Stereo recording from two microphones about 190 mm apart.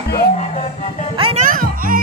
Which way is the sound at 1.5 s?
45° right (ahead or behind).